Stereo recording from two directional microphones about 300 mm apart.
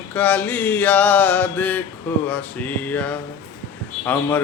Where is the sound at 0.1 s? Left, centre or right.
Centre.